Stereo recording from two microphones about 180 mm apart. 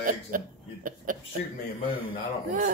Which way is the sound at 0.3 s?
50° right (ahead or behind).